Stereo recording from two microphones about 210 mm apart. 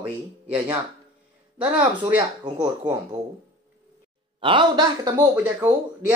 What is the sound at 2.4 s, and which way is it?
Speech, 20° right (ahead or behind).